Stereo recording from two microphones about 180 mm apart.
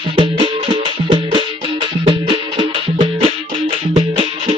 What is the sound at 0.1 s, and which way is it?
Music, 30° right (ahead or behind).